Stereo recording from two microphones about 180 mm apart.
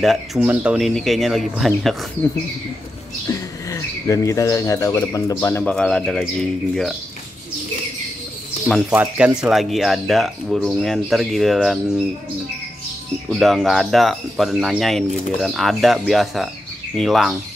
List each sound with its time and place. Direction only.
0.0 s speech: centre (ahead or behind)
3.3 s speech: 20° left (ahead or behind); by 7.0 s centre (ahead or behind)
8.9 s speech: 5° right (ahead or behind)
13.3 s speech: centre (ahead or behind)